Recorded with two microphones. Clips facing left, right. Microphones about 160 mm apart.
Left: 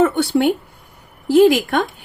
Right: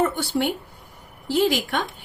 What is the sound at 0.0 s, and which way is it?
Speech, 65° left (ahead or behind).